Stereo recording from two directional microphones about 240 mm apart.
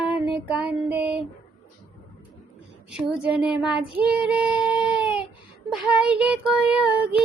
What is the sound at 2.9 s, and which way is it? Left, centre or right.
Child singing, centre.